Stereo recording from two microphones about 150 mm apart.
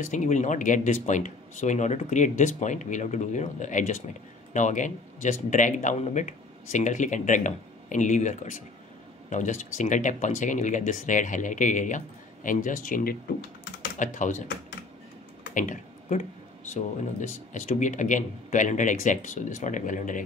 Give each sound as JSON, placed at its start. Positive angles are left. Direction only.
{"t": 0.0, "sound": "speech", "side_deg": 55}
{"t": 15.5, "sound": "computer keyboard", "side_deg": 60}
{"t": 16.7, "sound": "speech", "side_deg": 55}